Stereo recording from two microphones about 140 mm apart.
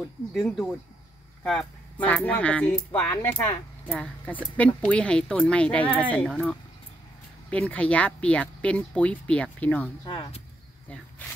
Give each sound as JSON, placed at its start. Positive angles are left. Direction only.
{"t": 0.3, "sound": "speech", "side_deg": 5}
{"t": 10.0, "sound": "speech", "side_deg": 40}